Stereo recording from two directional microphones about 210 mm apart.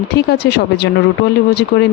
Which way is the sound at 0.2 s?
50° left (ahead or behind).